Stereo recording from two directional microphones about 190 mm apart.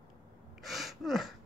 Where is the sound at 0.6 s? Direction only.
Centre (ahead or behind).